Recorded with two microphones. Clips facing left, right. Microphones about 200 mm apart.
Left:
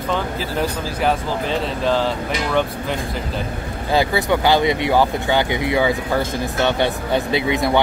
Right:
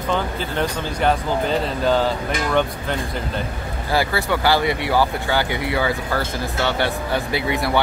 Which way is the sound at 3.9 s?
20° left (ahead or behind).